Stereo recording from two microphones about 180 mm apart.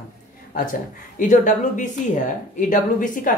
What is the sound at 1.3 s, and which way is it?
Speech, 45° left (ahead or behind).